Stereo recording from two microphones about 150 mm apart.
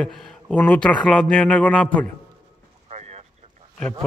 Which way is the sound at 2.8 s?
50° right (ahead or behind).